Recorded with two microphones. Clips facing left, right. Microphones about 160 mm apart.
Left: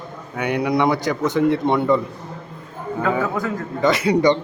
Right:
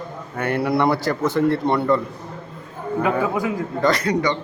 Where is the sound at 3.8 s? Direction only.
5° left (ahead or behind).